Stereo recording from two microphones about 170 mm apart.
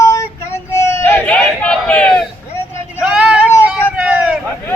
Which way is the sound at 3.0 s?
5° right (ahead or behind).